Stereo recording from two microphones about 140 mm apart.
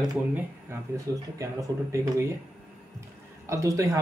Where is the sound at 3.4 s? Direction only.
20° right (ahead or behind).